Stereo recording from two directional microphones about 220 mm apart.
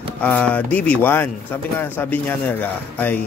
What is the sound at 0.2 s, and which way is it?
Speech, 5° left (ahead or behind).